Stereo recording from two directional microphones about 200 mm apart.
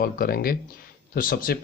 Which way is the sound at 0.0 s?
50° left (ahead or behind).